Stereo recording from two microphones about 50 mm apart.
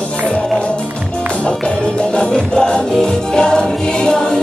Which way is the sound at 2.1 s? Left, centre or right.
Centre.